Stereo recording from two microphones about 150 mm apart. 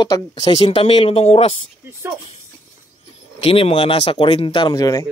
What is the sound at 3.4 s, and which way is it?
Speech, 40° left (ahead or behind).